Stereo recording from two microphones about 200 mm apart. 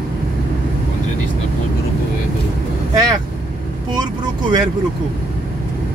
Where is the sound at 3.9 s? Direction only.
20° right (ahead or behind).